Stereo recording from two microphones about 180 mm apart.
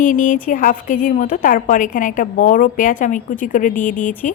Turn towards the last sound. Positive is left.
turn(degrees=45)  # may be behind; listen again after turning